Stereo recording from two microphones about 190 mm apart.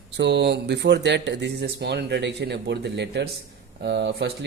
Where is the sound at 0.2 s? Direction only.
65° right (ahead or behind).